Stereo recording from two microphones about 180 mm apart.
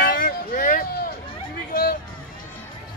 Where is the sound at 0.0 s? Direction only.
50° left (ahead or behind).